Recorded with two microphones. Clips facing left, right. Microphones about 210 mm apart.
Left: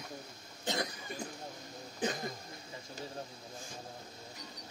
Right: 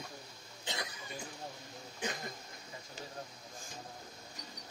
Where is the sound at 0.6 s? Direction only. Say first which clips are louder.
Left 7 dB; 45° left (ahead or behind).